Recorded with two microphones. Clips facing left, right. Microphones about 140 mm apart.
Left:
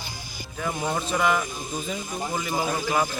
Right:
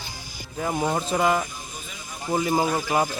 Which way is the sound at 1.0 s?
30° right (ahead or behind).